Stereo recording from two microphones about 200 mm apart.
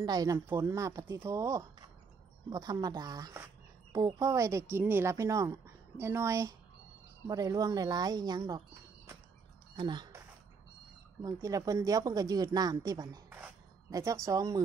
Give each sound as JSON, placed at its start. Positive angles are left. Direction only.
{"t": 0.0, "sound": "speech", "side_deg": -20}
{"t": 9.8, "sound": "a sound", "side_deg": -20}
{"t": 11.2, "sound": "speech", "side_deg": -15}